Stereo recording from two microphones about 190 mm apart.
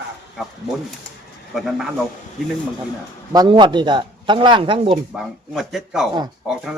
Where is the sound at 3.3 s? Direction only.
20° right (ahead or behind).